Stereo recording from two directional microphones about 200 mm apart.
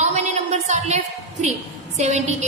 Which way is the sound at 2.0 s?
35° right (ahead or behind).